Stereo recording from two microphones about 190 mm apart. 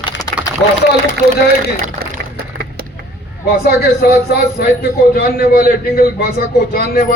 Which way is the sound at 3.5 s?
55° left (ahead or behind).